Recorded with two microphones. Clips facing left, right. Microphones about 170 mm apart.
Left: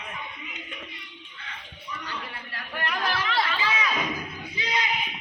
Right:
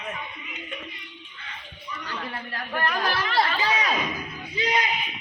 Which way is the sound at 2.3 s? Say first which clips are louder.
Right 6 dB; 45° right (ahead or behind).